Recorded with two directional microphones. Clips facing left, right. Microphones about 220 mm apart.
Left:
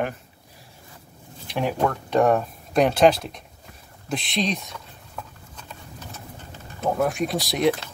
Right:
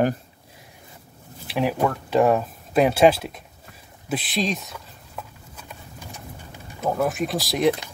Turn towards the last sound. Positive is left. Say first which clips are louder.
# even
turn(degrees=0)  # may be behind; listen again after turning